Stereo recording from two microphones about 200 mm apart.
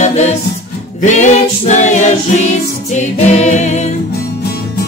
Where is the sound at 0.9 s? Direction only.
35° left (ahead or behind).